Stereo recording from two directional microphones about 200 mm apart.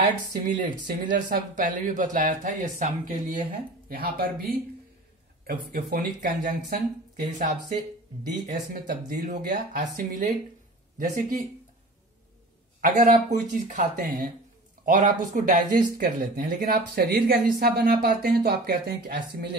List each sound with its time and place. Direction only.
1.1 s speech: 45° right (ahead or behind)
12.8 s speech: 40° right (ahead or behind)